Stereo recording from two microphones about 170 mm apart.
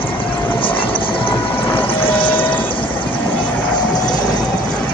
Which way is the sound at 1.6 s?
10° left (ahead or behind).